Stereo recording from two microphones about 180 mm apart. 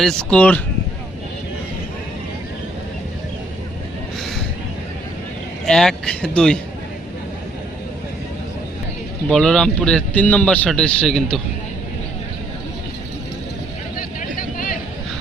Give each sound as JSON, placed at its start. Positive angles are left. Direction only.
{"t": 0.0, "sound": "a man's voice", "side_deg": 5}
{"t": 5.6, "sound": "a man's voice", "side_deg": 5}
{"t": 9.3, "sound": "a man's voice", "side_deg": 5}
{"t": 13.9, "sound": "vehicle", "side_deg": 50}